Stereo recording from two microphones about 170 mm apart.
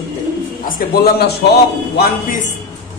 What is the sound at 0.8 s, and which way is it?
Speech, 70° left (ahead or behind).